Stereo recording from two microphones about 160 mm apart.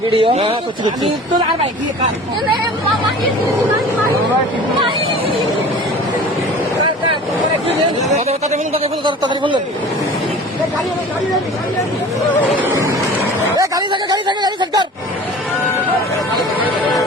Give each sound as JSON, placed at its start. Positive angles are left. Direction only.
{"t": 0.1, "sound": "a man's voice", "side_deg": -40}
{"t": 8.3, "sound": "a man's voice", "side_deg": -40}
{"t": 12.7, "sound": "vehicle", "side_deg": -20}
{"t": 13.6, "sound": "speech", "side_deg": -25}